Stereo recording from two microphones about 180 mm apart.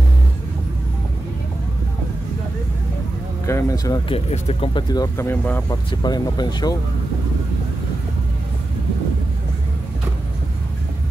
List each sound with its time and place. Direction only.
3.4 s speech: 15° left (ahead or behind)
4.1 s speech: 35° left (ahead or behind); by 5.6 s 10° left (ahead or behind)
5.7 s speech: 25° left (ahead or behind)